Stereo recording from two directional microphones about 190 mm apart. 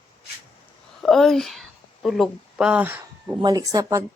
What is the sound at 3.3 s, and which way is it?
Speech, 20° right (ahead or behind).